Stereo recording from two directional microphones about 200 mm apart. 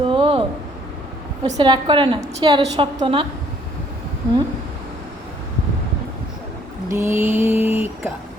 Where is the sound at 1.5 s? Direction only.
20° right (ahead or behind).